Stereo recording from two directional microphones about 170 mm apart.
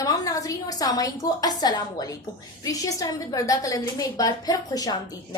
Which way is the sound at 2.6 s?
20° left (ahead or behind).